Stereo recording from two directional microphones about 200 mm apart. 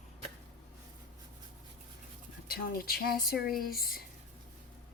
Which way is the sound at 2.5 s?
50° left (ahead or behind).